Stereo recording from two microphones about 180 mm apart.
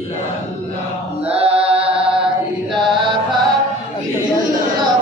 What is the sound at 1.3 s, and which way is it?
Chant, 30° right (ahead or behind).